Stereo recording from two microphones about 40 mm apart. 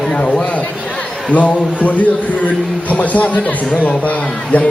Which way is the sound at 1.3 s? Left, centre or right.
Left.